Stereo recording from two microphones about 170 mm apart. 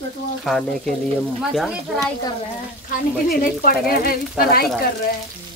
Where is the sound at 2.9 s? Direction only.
60° left (ahead or behind).